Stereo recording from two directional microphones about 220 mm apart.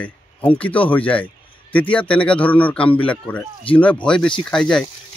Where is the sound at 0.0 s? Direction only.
5° left (ahead or behind).